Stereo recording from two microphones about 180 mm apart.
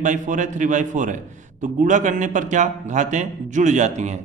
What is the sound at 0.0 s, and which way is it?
A man's voice, 45° right (ahead or behind).